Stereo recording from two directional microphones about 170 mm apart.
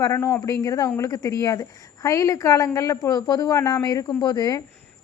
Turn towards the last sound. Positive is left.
turn(degrees=20)  # may be behind; listen again after turning